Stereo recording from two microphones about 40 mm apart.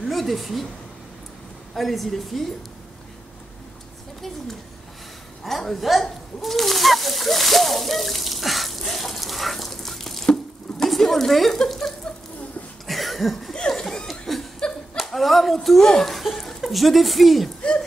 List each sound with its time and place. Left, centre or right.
0.0 s a woman's voice: centre
1.8 s a woman's voice: centre
5.6 s a woman's voice: centre
6.4 s water: centre
10.2 s a sound: centre
10.9 s speech: centre
12.8 s cough: centre
13.5 s laughter: centre
14.2 s chuckle: centre
15.0 s a woman's voice: centre
17.6 s speech: left